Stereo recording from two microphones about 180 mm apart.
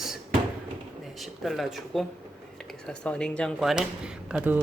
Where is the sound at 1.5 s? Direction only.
Centre (ahead or behind).